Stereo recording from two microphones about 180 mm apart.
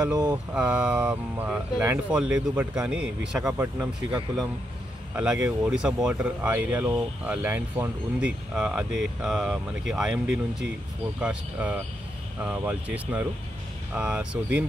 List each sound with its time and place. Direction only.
0.0 s speech: 20° right (ahead or behind)
0.6 s speech: 5° right (ahead or behind)
3.3 s speech: 15° right (ahead or behind)
3.8 s speech: 5° right (ahead or behind)